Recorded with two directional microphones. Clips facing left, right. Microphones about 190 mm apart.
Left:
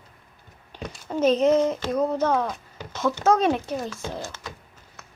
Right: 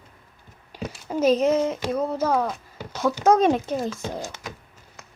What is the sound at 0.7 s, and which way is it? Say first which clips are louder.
Speech: right 2 dB; 5° right (ahead or behind).